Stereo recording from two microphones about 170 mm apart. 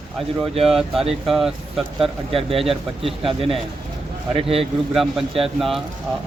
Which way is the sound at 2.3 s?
35° right (ahead or behind).